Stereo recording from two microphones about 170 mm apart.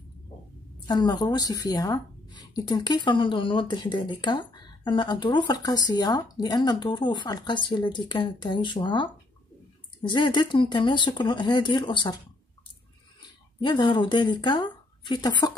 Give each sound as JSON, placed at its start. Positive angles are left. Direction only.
{"t": 0.8, "sound": "speech", "side_deg": 25}
{"t": 13.6, "sound": "speech", "side_deg": 25}